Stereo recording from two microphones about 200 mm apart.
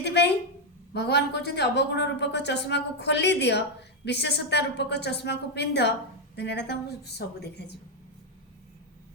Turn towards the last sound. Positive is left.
turn(degrees=55)  # may be behind; listen again after turning